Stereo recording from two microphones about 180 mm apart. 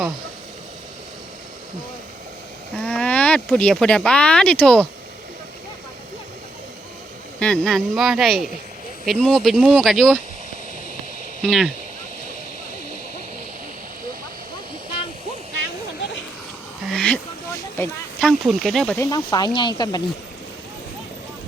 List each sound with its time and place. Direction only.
2.7 s speech: 5° left (ahead or behind)
7.3 s speech: 5° left (ahead or behind)
11.4 s speech: centre (ahead or behind)
16.8 s a sound: 5° left (ahead or behind)
18.6 s speech: centre (ahead or behind)
18.9 s speech: 20° left (ahead or behind)